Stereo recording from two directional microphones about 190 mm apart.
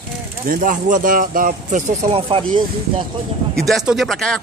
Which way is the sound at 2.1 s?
30° right (ahead or behind).